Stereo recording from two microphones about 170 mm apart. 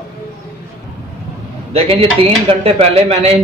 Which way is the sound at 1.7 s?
35° right (ahead or behind).